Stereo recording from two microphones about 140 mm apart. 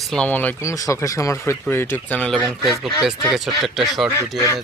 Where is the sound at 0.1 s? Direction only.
10° left (ahead or behind).